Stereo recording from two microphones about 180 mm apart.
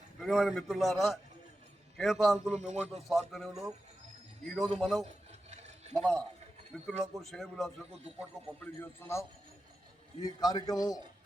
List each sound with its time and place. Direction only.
0.2 s a man's voice: centre (ahead or behind)
2.6 s speech: 40° right (ahead or behind)
3.1 s a man's voice: centre (ahead or behind)
5.5 s a sound: 40° right (ahead or behind)
5.9 s a man's voice: 5° left (ahead or behind)
8.6 s a man's voice: 10° left (ahead or behind)